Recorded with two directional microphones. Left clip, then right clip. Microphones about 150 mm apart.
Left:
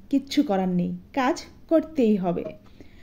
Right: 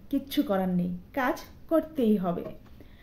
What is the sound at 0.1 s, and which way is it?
A woman's voice, 30° left (ahead or behind).